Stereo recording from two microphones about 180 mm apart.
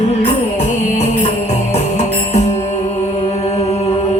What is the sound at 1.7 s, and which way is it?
Music, 35° left (ahead or behind).